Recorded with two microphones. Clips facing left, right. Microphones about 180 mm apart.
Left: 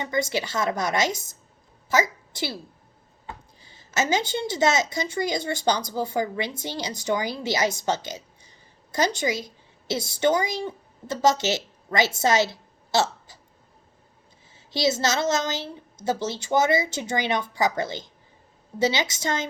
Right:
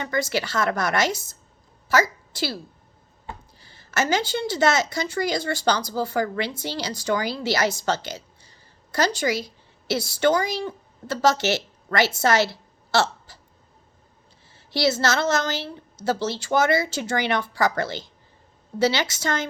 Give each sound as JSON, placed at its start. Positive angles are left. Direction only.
{"t": 0.0, "sound": "a woman's voice", "side_deg": 20}
{"t": 3.6, "sound": "a woman's voice", "side_deg": 20}
{"t": 14.7, "sound": "a woman's voice", "side_deg": 20}